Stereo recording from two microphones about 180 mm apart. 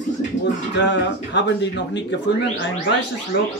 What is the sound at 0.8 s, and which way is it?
Speech, 85° left.